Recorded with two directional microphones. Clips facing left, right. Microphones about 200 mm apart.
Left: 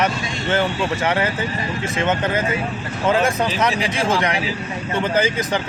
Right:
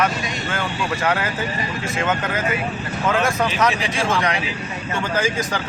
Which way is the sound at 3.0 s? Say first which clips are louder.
Left 2 dB; 30° left (ahead or behind).